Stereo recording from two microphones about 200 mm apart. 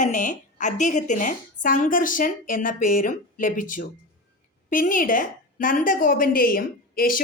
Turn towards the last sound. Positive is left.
turn(degrees=45)  # may be behind; listen again after turning